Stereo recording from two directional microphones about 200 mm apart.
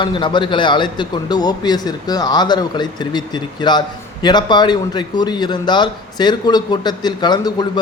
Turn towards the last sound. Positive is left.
turn(degrees=20)  # may be behind; listen again after turning